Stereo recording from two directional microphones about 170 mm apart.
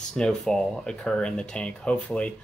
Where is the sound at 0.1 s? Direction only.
5° left (ahead or behind).